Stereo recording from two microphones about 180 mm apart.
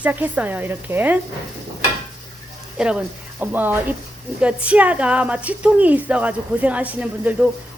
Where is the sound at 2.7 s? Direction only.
5° right (ahead or behind).